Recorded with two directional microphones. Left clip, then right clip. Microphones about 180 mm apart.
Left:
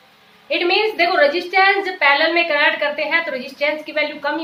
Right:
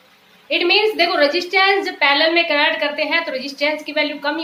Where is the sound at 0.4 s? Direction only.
20° right (ahead or behind).